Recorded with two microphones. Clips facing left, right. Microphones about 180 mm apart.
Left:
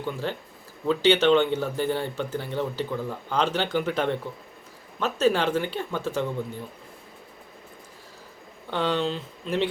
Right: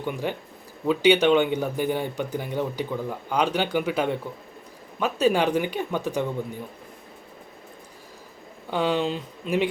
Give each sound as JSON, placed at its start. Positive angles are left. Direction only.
{"t": 0.0, "sound": "speech", "side_deg": -15}
{"t": 8.7, "sound": "speech", "side_deg": -10}